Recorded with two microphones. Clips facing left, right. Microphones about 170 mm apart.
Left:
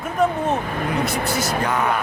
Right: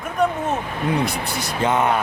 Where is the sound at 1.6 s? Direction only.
25° right (ahead or behind).